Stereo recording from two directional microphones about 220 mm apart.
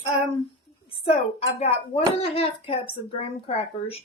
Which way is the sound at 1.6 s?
25° left (ahead or behind).